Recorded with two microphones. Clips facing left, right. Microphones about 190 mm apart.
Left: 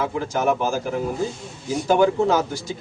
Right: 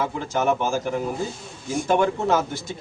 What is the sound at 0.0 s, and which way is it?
Speech, centre (ahead or behind).